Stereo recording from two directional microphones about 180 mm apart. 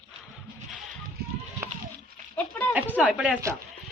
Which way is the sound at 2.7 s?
10° right (ahead or behind).